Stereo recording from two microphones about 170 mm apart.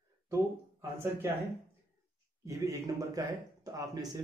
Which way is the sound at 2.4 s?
20° right (ahead or behind).